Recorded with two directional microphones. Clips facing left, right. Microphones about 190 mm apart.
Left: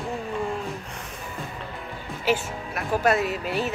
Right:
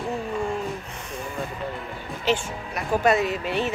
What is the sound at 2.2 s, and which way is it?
Speech, 5° left (ahead or behind).